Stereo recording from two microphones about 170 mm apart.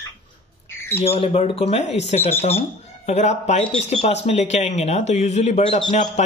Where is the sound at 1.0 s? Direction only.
35° left (ahead or behind).